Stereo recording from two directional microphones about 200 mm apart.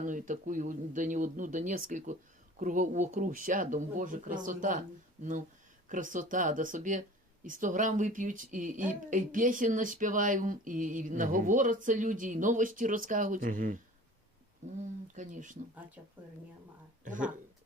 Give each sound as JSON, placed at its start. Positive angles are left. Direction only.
{"t": 0.0, "sound": "speech", "side_deg": -40}
{"t": 14.8, "sound": "speech", "side_deg": -40}
{"t": 16.0, "sound": "speech", "side_deg": -10}
{"t": 17.0, "sound": "speech", "side_deg": -40}